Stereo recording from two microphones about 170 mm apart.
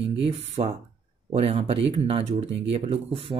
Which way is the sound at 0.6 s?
25° right (ahead or behind).